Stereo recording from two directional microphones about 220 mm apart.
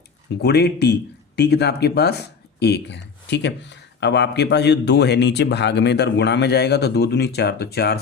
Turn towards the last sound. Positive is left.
turn(degrees=45)  # may be behind; listen again after turning